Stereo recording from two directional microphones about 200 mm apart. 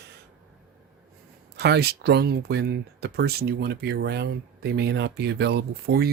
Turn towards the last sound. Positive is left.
turn(degrees=-50)  # may be behind; listen again after turning